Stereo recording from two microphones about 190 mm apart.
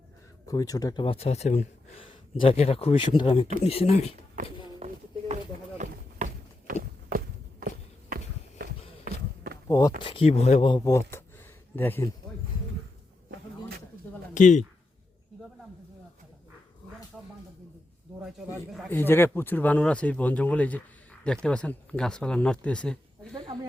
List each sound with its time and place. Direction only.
0.4 s speech: 20° left (ahead or behind)
4.8 s music: 30° right (ahead or behind)
5.3 s run: 40° right (ahead or behind)
8.1 s run: 55° right (ahead or behind)
9.6 s speech: 20° left (ahead or behind); by 10.7 s 35° left (ahead or behind)
10.7 s speech: 20° left (ahead or behind)
14.3 s speech: 40° left (ahead or behind)
17.1 s a sound: centre (ahead or behind)
18.2 s speech: 5° right (ahead or behind)
18.9 s speech: 10° left (ahead or behind)